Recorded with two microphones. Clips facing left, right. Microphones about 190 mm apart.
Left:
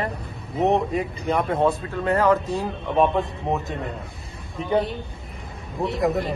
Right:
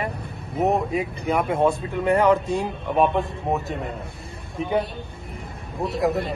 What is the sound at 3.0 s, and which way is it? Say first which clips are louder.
Speech: even; centre (ahead or behind).